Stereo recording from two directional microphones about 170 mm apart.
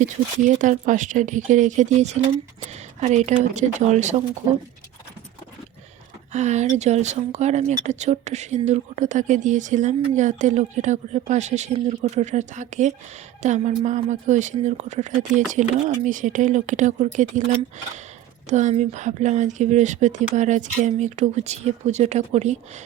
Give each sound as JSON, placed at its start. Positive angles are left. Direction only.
{"t": 0.0, "sound": "speech", "side_deg": -45}
{"t": 6.3, "sound": "speech", "side_deg": -45}